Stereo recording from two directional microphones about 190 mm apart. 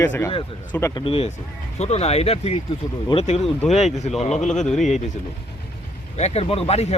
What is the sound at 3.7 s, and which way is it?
Speech, 35° left (ahead or behind).